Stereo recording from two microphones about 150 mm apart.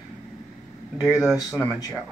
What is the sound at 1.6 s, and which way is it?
Speech, 20° left (ahead or behind).